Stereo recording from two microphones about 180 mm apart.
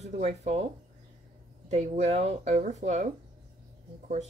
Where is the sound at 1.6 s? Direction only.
40° right (ahead or behind).